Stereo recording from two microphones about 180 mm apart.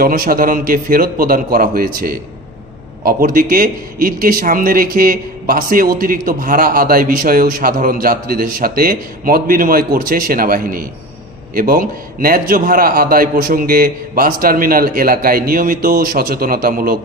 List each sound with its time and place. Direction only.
0.0 s a man's voice: 55° right (ahead or behind)
3.0 s a man's voice: 55° right (ahead or behind)